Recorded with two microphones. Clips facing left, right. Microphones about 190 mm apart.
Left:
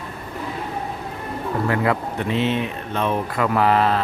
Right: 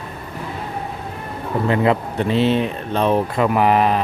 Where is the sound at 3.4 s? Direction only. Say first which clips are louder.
Even; 15° right (ahead or behind).